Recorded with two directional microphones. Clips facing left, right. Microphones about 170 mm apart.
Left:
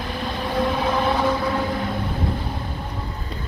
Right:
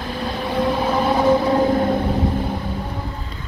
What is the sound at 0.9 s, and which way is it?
Vehicle, 20° right (ahead or behind).